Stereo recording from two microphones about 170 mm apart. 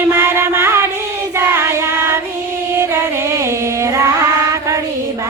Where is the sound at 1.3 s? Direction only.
15° right (ahead or behind).